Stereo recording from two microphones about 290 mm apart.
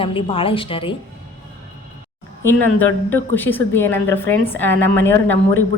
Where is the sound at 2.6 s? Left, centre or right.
Centre.